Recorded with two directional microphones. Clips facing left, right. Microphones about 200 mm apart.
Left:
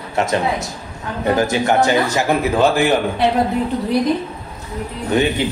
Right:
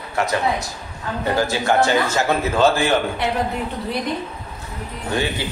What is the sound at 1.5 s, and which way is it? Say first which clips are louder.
A man's voice: left 2 dB; 20° left (ahead or behind).